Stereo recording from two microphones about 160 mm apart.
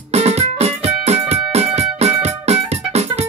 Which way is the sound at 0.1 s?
40° right (ahead or behind).